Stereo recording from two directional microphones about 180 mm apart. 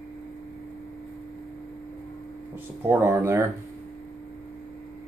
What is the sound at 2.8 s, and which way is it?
Speech, 10° right (ahead or behind).